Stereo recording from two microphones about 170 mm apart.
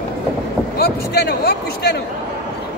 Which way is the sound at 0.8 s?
70° left (ahead or behind).